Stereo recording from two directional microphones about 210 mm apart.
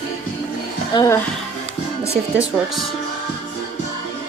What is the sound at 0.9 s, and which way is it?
Speech, 20° left (ahead or behind).